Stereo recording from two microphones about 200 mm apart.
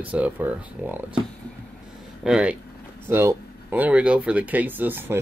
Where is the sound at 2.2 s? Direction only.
5° right (ahead or behind).